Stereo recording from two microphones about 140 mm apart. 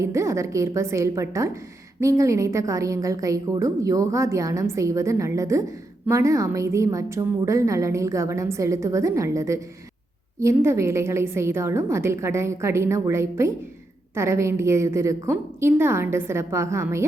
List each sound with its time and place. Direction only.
0.0 s a woman's voice: 20° right (ahead or behind)